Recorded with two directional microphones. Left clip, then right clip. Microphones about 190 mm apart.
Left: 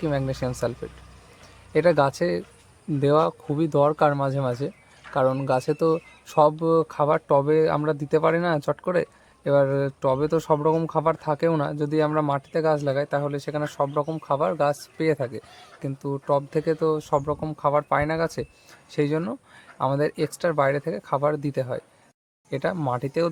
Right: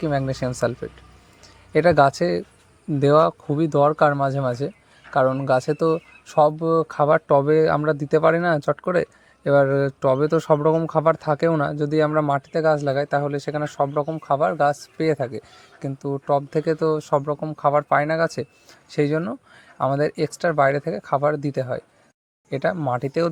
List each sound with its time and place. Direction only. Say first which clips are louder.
0.0 s speech: right 3 dB; 25° right (ahead or behind)